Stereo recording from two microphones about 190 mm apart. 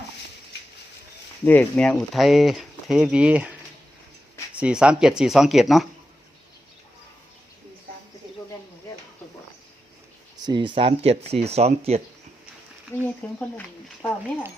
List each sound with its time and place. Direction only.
1.5 s speech: 10° left (ahead or behind)
4.5 s speech: 5° right (ahead or behind)
10.4 s speech: 25° right (ahead or behind)
12.9 s speech: 10° left (ahead or behind)